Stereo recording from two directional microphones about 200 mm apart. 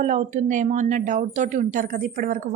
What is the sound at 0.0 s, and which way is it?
A woman's voice, 35° right (ahead or behind).